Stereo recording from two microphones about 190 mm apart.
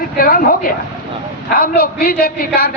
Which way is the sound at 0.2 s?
50° left (ahead or behind).